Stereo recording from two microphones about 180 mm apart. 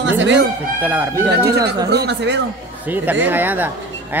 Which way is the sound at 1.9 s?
70° right (ahead or behind).